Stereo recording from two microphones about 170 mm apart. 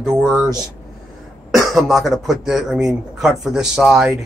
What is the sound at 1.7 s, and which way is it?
Speech, centre (ahead or behind).